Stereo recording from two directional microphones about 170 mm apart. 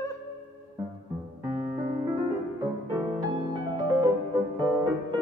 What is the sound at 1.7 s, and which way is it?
Piano, 25° right (ahead or behind).